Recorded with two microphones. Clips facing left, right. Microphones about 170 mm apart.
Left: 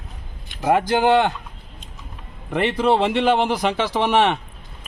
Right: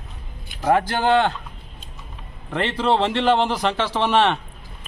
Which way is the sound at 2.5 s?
15° left (ahead or behind).